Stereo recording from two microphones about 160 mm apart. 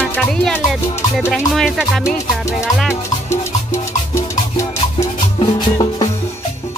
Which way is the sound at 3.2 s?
20° left (ahead or behind).